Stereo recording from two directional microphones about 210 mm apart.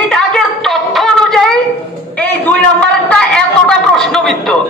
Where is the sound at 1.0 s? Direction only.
Centre (ahead or behind).